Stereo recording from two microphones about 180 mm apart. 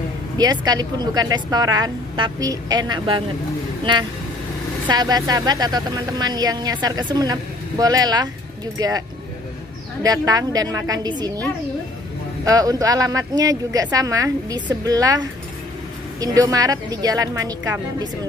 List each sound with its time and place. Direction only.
0.4 s a woman's voice: 20° right (ahead or behind)
4.8 s a woman's voice: 20° right (ahead or behind)
10.0 s a woman's voice: 20° right (ahead or behind)
12.4 s a woman's voice: 20° right (ahead or behind)